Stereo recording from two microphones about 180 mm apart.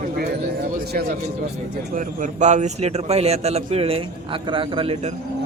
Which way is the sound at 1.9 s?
45° right (ahead or behind).